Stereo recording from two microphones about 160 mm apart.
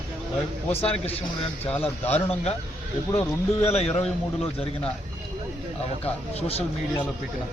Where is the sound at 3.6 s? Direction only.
40° left (ahead or behind).